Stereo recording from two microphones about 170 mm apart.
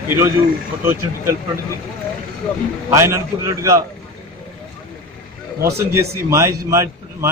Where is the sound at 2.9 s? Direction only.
20° right (ahead or behind).